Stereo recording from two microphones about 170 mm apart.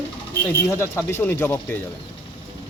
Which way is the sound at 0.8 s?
15° left (ahead or behind).